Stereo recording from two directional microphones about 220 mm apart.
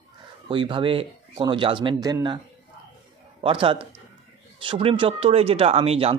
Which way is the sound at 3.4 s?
25° right (ahead or behind).